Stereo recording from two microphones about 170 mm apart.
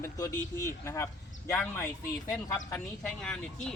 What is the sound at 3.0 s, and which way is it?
Speech, 5° left (ahead or behind).